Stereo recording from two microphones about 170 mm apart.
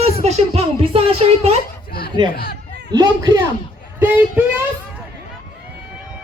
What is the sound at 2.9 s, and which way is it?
Speech, 20° right (ahead or behind).